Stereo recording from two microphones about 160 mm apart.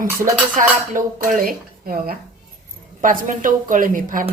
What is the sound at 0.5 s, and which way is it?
Speech, 55° right (ahead or behind).